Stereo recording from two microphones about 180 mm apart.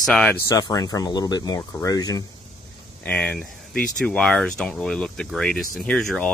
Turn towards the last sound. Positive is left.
turn(degrees=5)  # may be behind; listen again after turning